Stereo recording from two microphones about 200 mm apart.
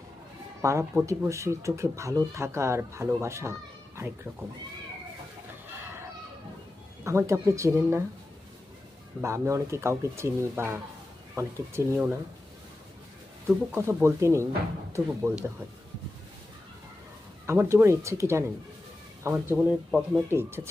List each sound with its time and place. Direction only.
0.6 s speech: 15° right (ahead or behind)
7.0 s speech: 15° right (ahead or behind)
9.2 s speech: 15° right (ahead or behind)
13.7 s speech: 15° right (ahead or behind)
17.4 s speech: 10° right (ahead or behind)